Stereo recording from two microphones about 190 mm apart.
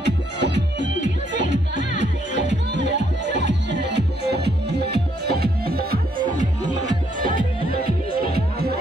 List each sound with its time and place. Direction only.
0.0 s music: 65° right (ahead or behind)